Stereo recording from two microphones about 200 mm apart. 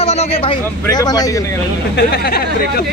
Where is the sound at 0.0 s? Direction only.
30° left (ahead or behind).